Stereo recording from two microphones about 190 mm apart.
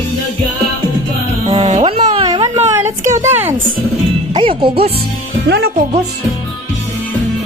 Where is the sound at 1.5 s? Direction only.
35° right (ahead or behind); by 3.5 s 10° right (ahead or behind).